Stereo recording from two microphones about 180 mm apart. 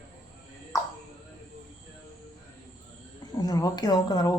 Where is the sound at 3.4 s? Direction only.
20° left (ahead or behind).